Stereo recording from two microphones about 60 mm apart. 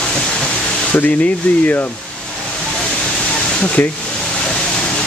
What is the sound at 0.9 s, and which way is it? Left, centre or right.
Speech, left.